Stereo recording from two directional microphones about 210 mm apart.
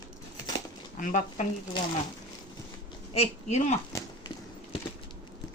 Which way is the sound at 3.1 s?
30° left (ahead or behind).